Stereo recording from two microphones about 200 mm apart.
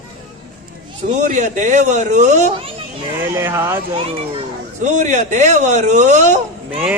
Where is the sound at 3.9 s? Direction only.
35° right (ahead or behind).